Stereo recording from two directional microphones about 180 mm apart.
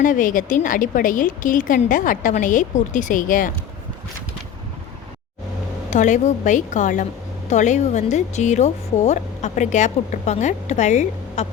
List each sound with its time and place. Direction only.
0.0 s speech: 45° left (ahead or behind)
5.9 s a woman's voice: 40° left (ahead or behind)